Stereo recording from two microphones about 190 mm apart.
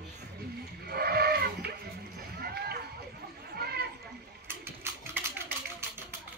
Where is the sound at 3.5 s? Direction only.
55° right (ahead or behind).